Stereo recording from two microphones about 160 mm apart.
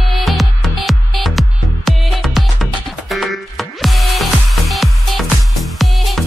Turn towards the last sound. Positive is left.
turn(degrees=0)  # may be behind; listen again after turning